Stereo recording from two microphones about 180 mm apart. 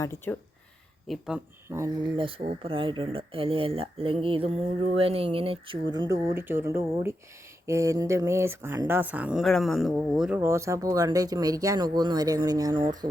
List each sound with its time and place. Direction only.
0.0 s speech: 15° left (ahead or behind)
1.0 s speech: centre (ahead or behind)
2.1 s speech: 30° right (ahead or behind)
6.1 s speech: 15° right (ahead or behind)